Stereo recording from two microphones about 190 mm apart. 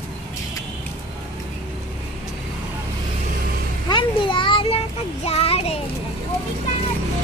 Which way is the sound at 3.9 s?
25° left (ahead or behind).